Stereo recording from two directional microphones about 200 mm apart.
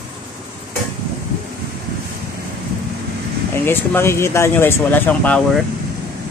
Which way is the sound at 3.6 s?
10° left (ahead or behind).